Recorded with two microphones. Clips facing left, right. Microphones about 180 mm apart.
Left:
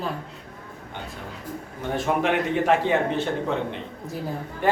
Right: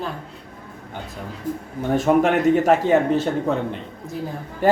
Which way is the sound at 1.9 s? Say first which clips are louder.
Right 6 dB; 45° right (ahead or behind).